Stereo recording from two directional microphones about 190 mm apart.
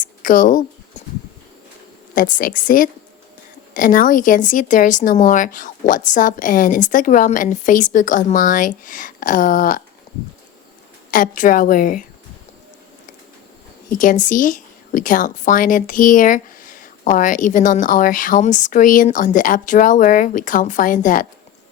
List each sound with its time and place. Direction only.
0.0 s a sound: 45° left (ahead or behind)
2.1 s speech: 45° left (ahead or behind)
11.1 s speech: 45° left (ahead or behind)
13.9 s speech: 45° left (ahead or behind)